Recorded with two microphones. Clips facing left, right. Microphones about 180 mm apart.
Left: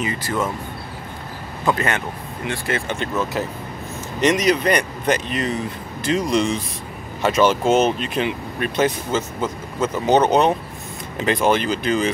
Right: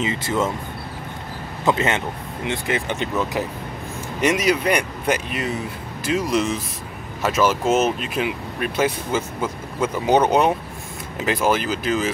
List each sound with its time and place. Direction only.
0.0 s speech: 25° right (ahead or behind)
1.7 s speech: 20° right (ahead or behind); by 12.1 s 5° right (ahead or behind)